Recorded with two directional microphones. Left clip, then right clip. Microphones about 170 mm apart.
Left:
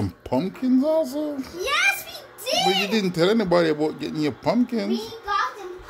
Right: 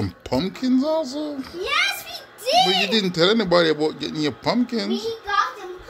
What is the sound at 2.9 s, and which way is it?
Speech, 10° left (ahead or behind).